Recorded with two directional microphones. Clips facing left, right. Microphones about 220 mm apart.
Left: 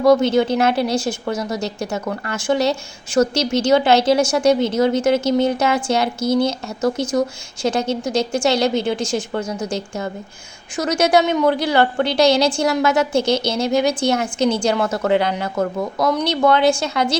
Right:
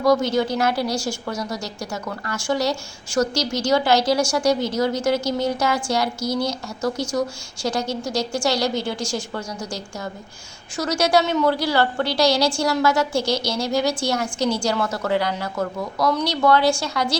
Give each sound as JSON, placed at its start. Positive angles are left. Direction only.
{"t": 0.0, "sound": "a woman's voice", "side_deg": 25}